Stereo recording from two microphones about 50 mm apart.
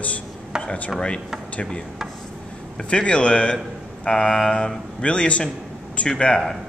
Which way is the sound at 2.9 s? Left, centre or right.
Left.